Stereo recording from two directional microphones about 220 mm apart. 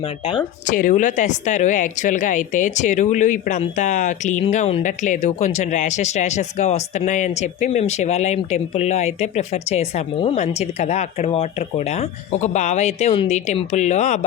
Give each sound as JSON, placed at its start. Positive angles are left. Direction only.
{"t": 0.7, "sound": "speech", "side_deg": 35}